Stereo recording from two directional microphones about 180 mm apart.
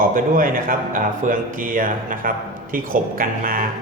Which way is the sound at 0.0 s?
50° right (ahead or behind).